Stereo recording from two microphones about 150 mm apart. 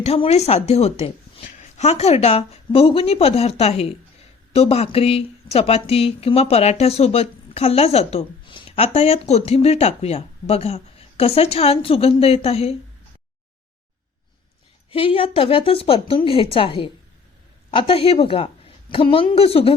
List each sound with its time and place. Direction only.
0.0 s speech: 45° left (ahead or behind)
14.8 s a woman's voice: 40° left (ahead or behind)